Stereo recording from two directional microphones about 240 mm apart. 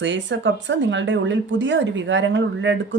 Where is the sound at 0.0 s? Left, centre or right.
Right.